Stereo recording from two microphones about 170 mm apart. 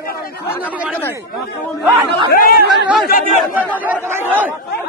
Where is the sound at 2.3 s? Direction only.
60° left (ahead or behind).